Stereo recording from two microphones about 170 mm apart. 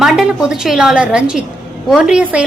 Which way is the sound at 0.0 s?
5° right (ahead or behind).